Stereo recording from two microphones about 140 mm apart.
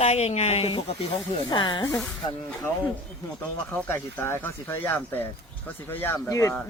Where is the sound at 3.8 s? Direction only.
15° left (ahead or behind).